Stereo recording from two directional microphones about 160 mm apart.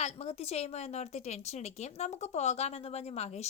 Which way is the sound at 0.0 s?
40° left (ahead or behind).